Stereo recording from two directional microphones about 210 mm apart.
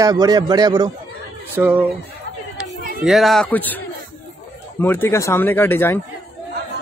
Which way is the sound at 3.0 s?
Centre (ahead or behind).